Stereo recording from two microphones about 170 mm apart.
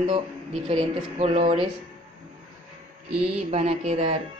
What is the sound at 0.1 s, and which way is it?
Speech, 30° right (ahead or behind).